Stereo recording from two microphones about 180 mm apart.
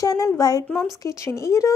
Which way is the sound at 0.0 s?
20° left (ahead or behind).